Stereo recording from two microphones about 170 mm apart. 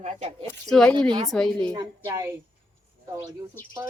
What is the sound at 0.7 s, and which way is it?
Speech, 5° left (ahead or behind).